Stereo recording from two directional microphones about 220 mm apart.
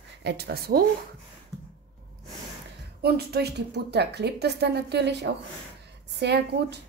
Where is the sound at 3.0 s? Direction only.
45° right (ahead or behind).